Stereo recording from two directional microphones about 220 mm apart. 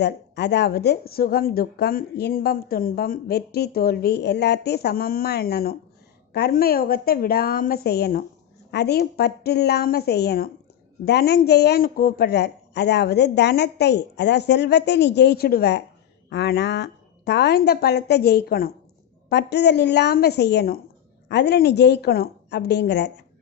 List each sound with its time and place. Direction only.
0.0 s a woman's voice: 50° left (ahead or behind)